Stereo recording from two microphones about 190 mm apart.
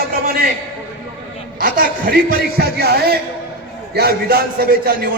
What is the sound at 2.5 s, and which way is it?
A man's voice, 55° right (ahead or behind).